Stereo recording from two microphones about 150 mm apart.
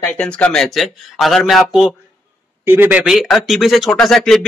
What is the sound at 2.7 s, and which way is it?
Speech, 15° right (ahead or behind).